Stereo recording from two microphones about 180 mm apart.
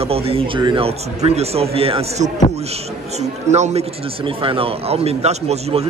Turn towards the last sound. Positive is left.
turn(degrees=-35)  # may be behind; listen again after turning